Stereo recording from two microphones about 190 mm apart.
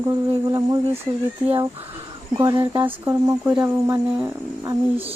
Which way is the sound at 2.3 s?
20° right (ahead or behind).